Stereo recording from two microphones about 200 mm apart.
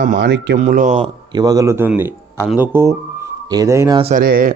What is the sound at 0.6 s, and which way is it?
Speech, 40° right (ahead or behind).